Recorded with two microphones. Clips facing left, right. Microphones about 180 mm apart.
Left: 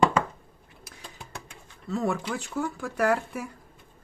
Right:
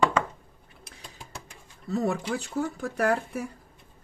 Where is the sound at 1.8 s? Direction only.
40° right (ahead or behind).